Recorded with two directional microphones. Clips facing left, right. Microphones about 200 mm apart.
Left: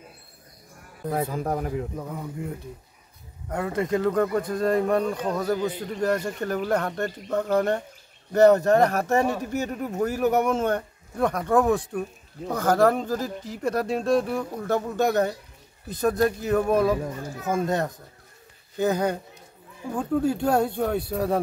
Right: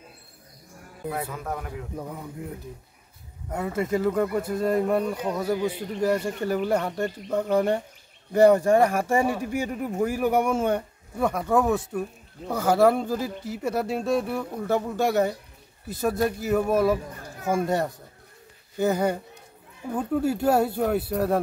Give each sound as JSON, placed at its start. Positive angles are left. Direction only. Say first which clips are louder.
{"t": 1.3, "sound": "a man's voice", "louder": "left 6 dB", "side_deg": 35}
{"t": 2.0, "sound": "speech", "louder": "left 2 dB", "side_deg": -5}